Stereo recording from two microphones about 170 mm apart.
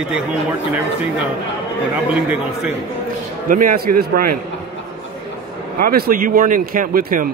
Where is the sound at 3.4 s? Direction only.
55° right (ahead or behind).